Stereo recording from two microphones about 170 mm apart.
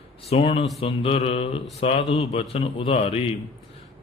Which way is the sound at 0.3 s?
35° left (ahead or behind).